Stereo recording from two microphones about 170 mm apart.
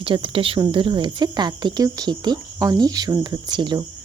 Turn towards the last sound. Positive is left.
turn(degrees=-25)  # may be behind; listen again after turning